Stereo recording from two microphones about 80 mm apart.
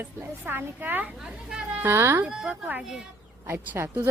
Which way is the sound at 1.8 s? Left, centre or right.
Right.